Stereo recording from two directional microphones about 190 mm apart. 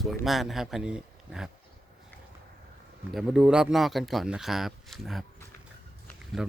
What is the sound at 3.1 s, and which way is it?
Speech, centre (ahead or behind).